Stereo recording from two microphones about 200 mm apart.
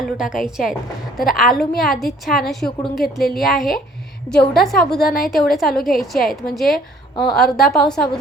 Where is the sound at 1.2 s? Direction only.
45° left (ahead or behind).